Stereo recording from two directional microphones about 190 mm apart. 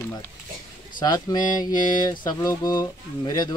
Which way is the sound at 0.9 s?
20° left (ahead or behind).